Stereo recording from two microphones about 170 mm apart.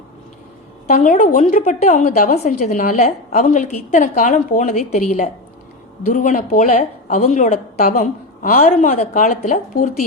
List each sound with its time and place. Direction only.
0.9 s a woman's voice: 45° left (ahead or behind)